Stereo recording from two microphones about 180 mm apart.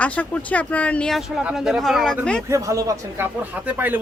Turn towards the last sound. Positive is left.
turn(degrees=-10)  # may be behind; listen again after turning